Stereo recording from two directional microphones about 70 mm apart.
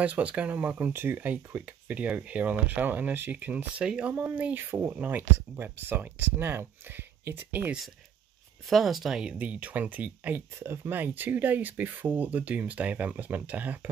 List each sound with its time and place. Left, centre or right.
0.0 s speech: right
3.8 s speech: centre
4.1 s speech: right
8.6 s speech: centre; by 13.7 s right